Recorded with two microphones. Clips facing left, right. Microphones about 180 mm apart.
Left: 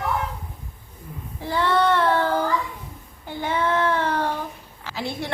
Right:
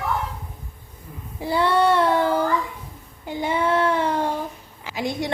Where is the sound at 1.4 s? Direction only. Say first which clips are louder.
Right 2 dB; 10° right (ahead or behind).